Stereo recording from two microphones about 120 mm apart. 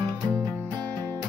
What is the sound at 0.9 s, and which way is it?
Music, 35° right (ahead or behind).